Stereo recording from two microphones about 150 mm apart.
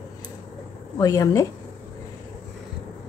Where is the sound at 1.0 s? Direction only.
20° left (ahead or behind).